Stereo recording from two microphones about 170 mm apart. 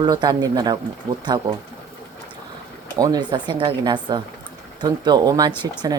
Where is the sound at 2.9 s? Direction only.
20° right (ahead or behind).